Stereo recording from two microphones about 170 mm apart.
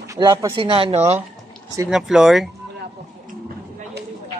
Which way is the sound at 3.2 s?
60° right (ahead or behind).